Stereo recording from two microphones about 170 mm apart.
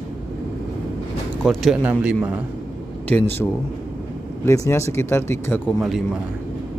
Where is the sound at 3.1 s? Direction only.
10° left (ahead or behind).